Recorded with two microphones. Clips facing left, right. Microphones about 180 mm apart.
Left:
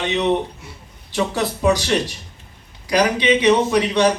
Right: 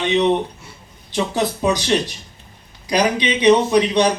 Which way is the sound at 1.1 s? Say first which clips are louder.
Right 1 dB; 20° right (ahead or behind).